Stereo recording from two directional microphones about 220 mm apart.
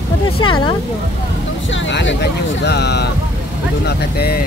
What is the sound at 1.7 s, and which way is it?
Speech, 55° left (ahead or behind).